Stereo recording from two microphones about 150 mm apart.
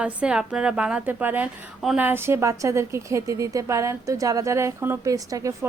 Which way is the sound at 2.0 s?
15° right (ahead or behind).